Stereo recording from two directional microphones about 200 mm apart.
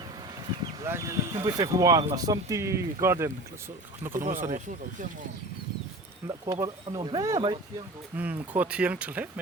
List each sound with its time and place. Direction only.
0.6 s speech: 15° right (ahead or behind)
4.1 s speech: 40° right (ahead or behind)
6.2 s speech: 20° right (ahead or behind)
8.1 s speech: 10° right (ahead or behind)